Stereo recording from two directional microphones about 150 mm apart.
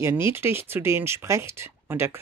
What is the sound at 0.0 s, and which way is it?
Speech, 15° right (ahead or behind).